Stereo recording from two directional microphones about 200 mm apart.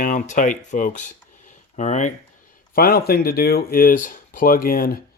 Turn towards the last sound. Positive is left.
turn(degrees=45)  # may be behind; listen again after turning